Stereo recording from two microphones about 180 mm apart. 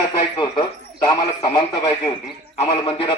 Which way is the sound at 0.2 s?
25° left (ahead or behind).